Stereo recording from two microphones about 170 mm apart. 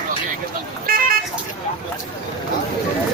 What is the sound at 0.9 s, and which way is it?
Vehicle, 60° right (ahead or behind).